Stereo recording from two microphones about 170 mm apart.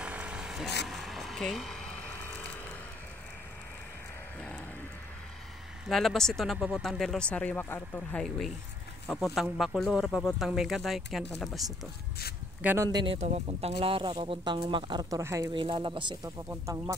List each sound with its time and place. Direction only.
0.0 s vehicle: 5° right (ahead or behind)
0.8 s a sound: centre (ahead or behind)
5.9 s speech: centre (ahead or behind)
12.6 s speech: 15° right (ahead or behind)
13.0 s speech: 35° right (ahead or behind); by 15.5 s 15° right (ahead or behind)
15.5 s speech: 30° right (ahead or behind)
16.4 s speech: 15° right (ahead or behind)